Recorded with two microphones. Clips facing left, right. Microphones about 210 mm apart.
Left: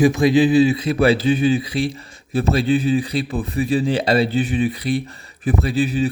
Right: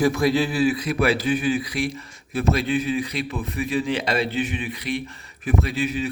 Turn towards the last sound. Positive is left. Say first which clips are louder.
# left 5 dB
turn(degrees=35)  # may be behind; listen again after turning